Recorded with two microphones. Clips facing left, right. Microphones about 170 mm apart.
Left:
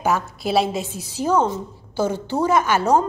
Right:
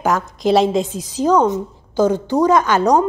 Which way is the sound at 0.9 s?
15° right (ahead or behind).